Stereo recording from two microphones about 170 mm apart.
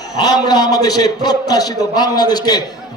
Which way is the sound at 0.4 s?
25° left (ahead or behind).